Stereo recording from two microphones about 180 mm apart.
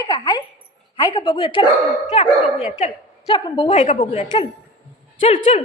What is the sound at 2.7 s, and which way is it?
A woman's voice, 35° left (ahead or behind).